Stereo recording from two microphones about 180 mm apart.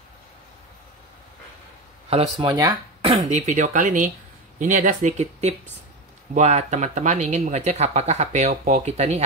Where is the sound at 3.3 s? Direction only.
40° right (ahead or behind).